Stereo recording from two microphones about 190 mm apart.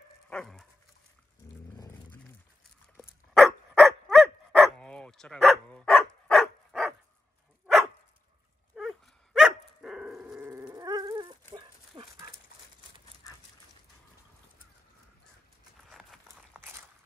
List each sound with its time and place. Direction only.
0.3 s dog: 5° left (ahead or behind)
1.8 s dog: 15° left (ahead or behind)
3.3 s dog: centre (ahead or behind)
8.7 s dog: centre (ahead or behind)
10.4 s dog: 15° right (ahead or behind)
15.9 s a sound: centre (ahead or behind)
16.5 s a sound: 10° right (ahead or behind)